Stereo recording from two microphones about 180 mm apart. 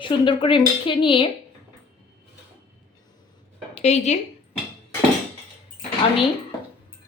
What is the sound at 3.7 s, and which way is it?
Speech, 40° left (ahead or behind).